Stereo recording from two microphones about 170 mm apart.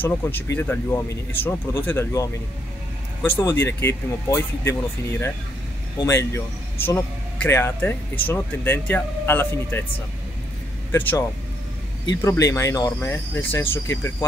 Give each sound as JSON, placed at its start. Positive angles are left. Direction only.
{"t": 0.0, "sound": "speech", "side_deg": 10}
{"t": 3.3, "sound": "speech", "side_deg": 15}
{"t": 10.9, "sound": "speech", "side_deg": 15}